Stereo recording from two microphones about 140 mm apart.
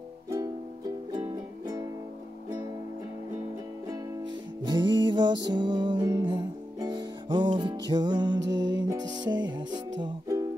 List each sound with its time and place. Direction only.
3.9 s music: 30° right (ahead or behind)